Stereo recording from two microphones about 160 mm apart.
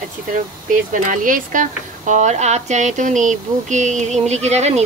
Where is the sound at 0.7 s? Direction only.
55° right (ahead or behind).